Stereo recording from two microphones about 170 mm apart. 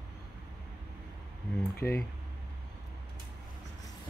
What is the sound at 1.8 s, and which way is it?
Speech, 15° left (ahead or behind).